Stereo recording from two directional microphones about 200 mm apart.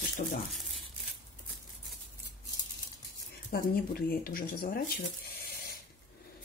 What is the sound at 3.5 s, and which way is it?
Speech, 50° left (ahead or behind).